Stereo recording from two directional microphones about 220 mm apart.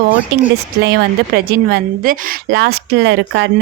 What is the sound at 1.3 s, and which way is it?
A woman's voice, 45° right (ahead or behind).